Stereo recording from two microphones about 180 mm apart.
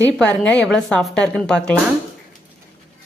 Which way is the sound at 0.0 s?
10° left (ahead or behind).